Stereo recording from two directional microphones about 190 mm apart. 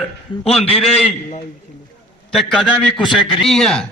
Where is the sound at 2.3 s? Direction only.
Centre (ahead or behind).